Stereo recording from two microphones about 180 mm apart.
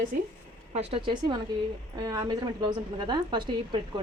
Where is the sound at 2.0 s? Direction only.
20° right (ahead or behind).